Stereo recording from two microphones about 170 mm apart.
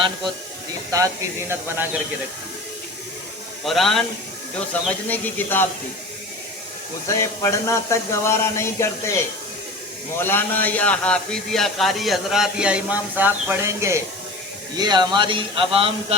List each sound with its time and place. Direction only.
0.9 s speech: 20° right (ahead or behind)
3.6 s a man's voice: centre (ahead or behind)
7.1 s a man's voice: 15° left (ahead or behind); by 16.1 s 35° right (ahead or behind)